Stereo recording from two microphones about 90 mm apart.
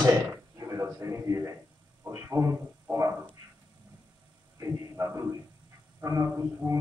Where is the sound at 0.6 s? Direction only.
35° right (ahead or behind).